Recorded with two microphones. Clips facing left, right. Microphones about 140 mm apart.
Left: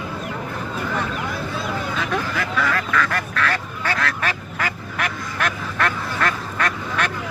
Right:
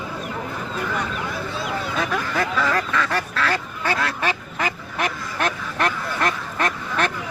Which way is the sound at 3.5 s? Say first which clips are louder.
Right 1 dB; 20° right (ahead or behind).